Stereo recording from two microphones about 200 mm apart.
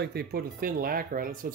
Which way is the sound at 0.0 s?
55° right (ahead or behind).